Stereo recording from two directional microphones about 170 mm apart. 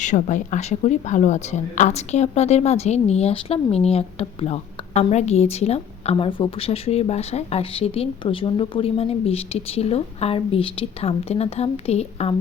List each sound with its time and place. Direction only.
0.0 s speech: 45° left (ahead or behind)